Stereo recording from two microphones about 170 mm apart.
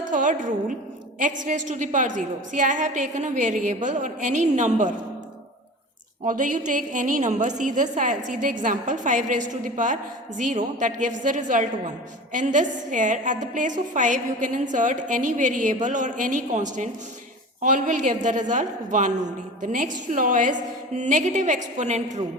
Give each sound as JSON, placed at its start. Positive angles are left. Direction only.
{"t": 0.1, "sound": "a woman's voice", "side_deg": -50}
{"t": 6.2, "sound": "a woman's voice", "side_deg": -50}